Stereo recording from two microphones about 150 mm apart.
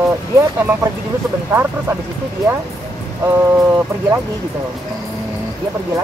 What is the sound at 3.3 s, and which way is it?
Speech, 15° right (ahead or behind).